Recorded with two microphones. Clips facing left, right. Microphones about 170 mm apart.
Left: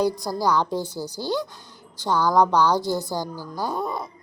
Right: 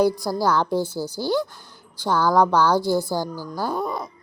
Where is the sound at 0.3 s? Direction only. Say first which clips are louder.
Right 2 dB; 15° left (ahead or behind).